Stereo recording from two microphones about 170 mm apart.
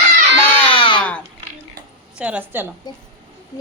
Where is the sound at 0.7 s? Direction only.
30° left (ahead or behind).